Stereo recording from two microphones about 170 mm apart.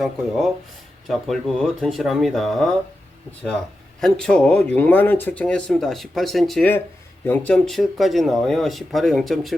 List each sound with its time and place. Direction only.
0.0 s speech: centre (ahead or behind)
4.0 s speech: 5° left (ahead or behind)